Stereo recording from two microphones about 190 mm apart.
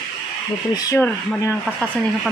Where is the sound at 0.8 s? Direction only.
20° left (ahead or behind).